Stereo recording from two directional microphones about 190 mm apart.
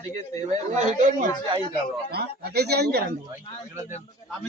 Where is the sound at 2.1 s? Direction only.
60° right (ahead or behind).